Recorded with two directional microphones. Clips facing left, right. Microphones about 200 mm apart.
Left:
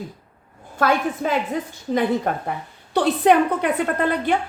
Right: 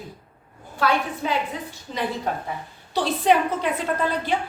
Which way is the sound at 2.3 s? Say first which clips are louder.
Left 3 dB; 55° left (ahead or behind).